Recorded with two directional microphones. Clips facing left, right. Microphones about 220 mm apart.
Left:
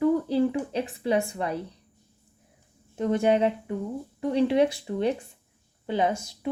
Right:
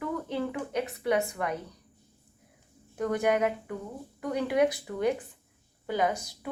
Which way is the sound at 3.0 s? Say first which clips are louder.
Left 4 dB; 25° left (ahead or behind).